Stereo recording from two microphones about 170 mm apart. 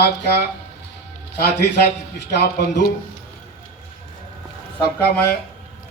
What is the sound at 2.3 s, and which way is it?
Speech, 85° left.